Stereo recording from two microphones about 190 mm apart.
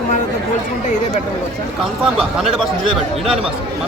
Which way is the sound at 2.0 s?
5° right (ahead or behind).